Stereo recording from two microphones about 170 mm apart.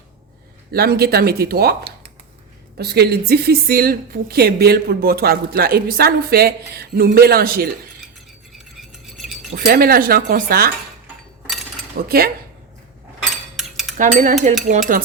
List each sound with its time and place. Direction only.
0.7 s speech: 65° right (ahead or behind)
2.7 s a woman's voice: 70° right (ahead or behind)
8.5 s a sound: centre (ahead or behind)
9.6 s a woman's voice: 60° right (ahead or behind)
12.0 s a woman's voice: 65° right (ahead or behind)
13.6 s cutlery: centre (ahead or behind)
13.9 s cutlery: 50° right (ahead or behind)
14.7 s stir: 50° right (ahead or behind)